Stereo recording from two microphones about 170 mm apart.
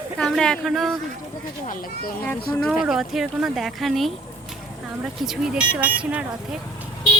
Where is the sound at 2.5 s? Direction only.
5° left (ahead or behind).